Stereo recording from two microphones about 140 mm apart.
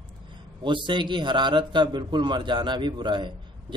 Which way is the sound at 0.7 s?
35° right (ahead or behind).